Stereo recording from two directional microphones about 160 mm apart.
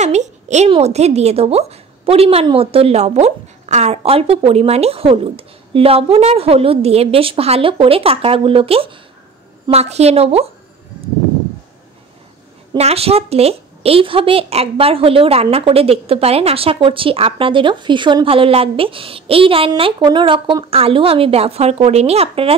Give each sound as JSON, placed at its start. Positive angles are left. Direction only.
{"t": 0.0, "sound": "a woman's voice", "side_deg": -45}
{"t": 12.7, "sound": "a woman's voice", "side_deg": -40}